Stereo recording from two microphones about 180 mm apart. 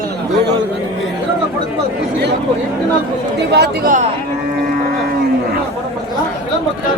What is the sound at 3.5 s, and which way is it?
Speech, 65° right (ahead or behind).